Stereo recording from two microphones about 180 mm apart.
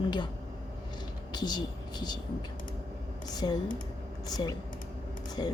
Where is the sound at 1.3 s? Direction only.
25° left (ahead or behind).